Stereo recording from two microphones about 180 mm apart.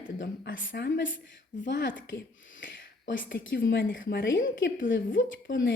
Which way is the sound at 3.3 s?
15° left (ahead or behind).